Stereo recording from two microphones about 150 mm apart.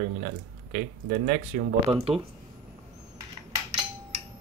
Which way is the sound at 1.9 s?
40° right (ahead or behind).